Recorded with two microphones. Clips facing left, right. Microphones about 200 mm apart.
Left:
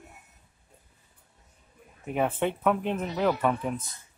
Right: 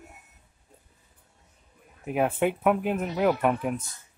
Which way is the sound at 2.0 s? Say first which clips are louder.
Right 2 dB; 5° right (ahead or behind).